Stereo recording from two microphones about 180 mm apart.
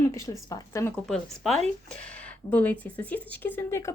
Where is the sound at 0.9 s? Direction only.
Centre (ahead or behind).